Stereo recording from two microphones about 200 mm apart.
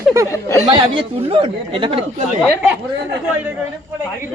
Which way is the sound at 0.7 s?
25° right (ahead or behind).